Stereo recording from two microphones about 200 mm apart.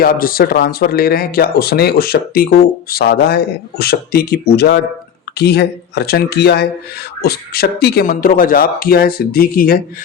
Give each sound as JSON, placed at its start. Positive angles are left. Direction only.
{"t": 0.0, "sound": "speech", "side_deg": 45}